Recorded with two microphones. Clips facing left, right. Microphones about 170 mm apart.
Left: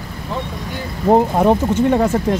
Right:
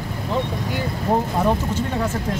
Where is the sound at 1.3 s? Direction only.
60° left (ahead or behind).